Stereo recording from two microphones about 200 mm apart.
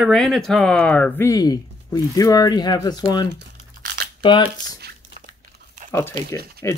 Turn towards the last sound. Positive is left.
turn(degrees=-50)  # may be behind; listen again after turning